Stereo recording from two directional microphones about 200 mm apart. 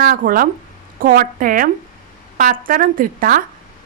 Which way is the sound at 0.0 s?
45° right (ahead or behind).